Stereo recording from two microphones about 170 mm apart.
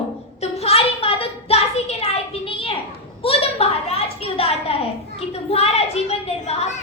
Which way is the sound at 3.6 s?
40° left (ahead or behind).